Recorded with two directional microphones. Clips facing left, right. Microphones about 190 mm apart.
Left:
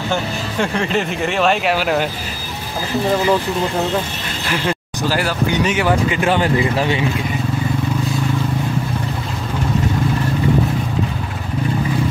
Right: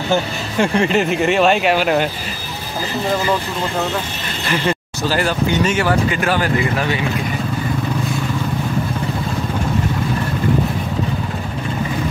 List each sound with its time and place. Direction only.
0.1 s speech: 5° right (ahead or behind)
4.5 s speech: 5° left (ahead or behind); by 7.0 s 25° left (ahead or behind)